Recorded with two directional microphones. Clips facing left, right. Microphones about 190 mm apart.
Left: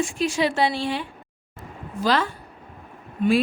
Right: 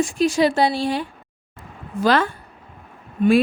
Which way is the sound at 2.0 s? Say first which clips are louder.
Right 4 dB; 55° right (ahead or behind).